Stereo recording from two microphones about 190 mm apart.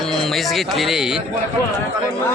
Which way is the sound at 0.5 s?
Centre (ahead or behind).